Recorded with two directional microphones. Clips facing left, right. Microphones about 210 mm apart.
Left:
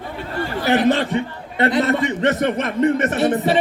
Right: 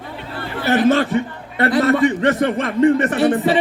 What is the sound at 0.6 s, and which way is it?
A man's voice, 20° left (ahead or behind).